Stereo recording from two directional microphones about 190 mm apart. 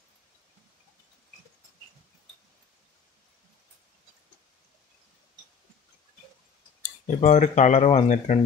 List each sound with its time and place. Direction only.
7.2 s speech: 40° left (ahead or behind)